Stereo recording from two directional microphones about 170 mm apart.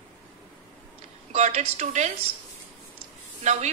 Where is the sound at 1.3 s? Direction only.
40° right (ahead or behind).